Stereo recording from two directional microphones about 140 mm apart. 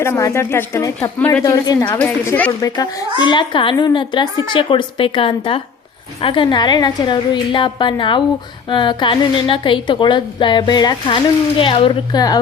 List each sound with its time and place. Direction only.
0.0 s speech: 20° left (ahead or behind)
1.9 s a woman's voice: 10° left (ahead or behind)
2.6 s a woman's voice: 25° left (ahead or behind)